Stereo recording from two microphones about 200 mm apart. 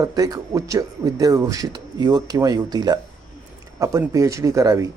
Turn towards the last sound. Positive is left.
turn(degrees=-15)  # may be behind; listen again after turning